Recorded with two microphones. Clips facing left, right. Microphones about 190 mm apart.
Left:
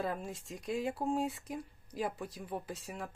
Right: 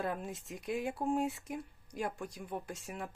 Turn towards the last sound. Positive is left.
turn(degrees=0)  # may be behind; listen again after turning